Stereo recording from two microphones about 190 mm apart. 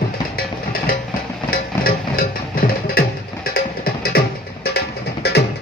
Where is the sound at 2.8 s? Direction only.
55° left (ahead or behind).